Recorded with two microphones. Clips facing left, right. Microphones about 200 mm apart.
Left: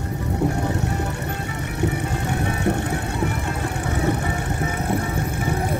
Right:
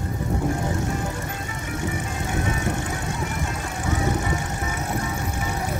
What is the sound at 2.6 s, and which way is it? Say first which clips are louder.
Vehicle: left 5 dB; 60° left (ahead or behind).